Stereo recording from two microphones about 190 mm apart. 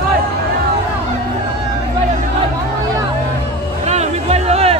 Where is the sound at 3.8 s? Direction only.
35° right (ahead or behind).